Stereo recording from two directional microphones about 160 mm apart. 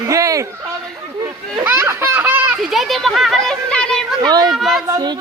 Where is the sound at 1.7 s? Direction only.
15° right (ahead or behind); by 4.0 s 5° left (ahead or behind).